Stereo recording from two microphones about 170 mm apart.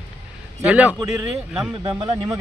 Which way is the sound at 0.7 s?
10° right (ahead or behind).